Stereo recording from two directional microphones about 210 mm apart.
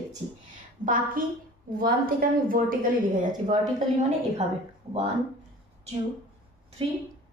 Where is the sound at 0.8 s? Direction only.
40° right (ahead or behind).